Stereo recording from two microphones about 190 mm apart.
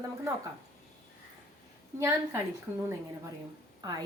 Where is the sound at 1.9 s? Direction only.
15° right (ahead or behind).